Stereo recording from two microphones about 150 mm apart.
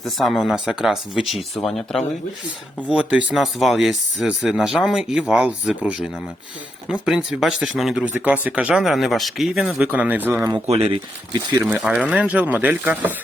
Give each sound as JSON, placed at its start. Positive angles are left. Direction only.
{"t": 0.0, "sound": "speech", "side_deg": 0}
{"t": 2.9, "sound": "speech", "side_deg": -10}
{"t": 10.7, "sound": "speech", "side_deg": -40}
{"t": 11.6, "sound": "speech", "side_deg": -5}